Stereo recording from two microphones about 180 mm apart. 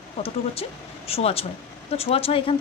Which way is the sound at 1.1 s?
35° left (ahead or behind).